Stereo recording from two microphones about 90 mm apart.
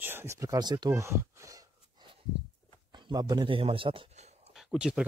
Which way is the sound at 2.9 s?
50° right (ahead or behind).